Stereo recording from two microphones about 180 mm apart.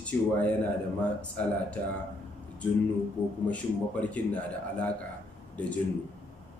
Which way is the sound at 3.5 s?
10° left (ahead or behind).